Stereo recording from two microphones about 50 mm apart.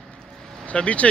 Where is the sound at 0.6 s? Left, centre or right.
Left.